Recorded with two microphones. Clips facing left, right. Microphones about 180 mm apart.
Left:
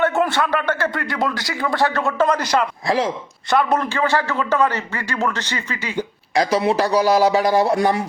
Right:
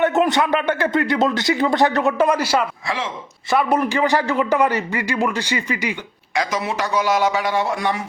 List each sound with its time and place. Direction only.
0.0 s speech: 20° right (ahead or behind)
2.8 s a man's voice: 40° left (ahead or behind)
3.5 s a man's voice: 10° right (ahead or behind)
6.3 s a man's voice: 35° left (ahead or behind)